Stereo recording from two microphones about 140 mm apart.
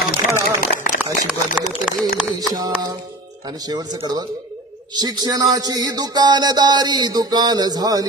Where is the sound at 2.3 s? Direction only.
30° right (ahead or behind).